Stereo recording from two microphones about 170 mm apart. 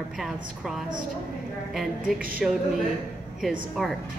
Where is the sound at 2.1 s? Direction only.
55° right (ahead or behind).